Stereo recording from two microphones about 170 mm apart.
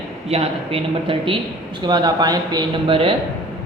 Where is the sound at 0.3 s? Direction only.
35° right (ahead or behind).